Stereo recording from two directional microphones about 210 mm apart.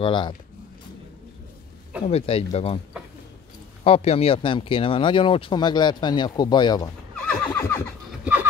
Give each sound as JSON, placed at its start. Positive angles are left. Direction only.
{"t": 0.0, "sound": "speech", "side_deg": 25}
{"t": 2.0, "sound": "speech", "side_deg": 30}
{"t": 3.8, "sound": "speech", "side_deg": 30}
{"t": 7.2, "sound": "neigh", "side_deg": 5}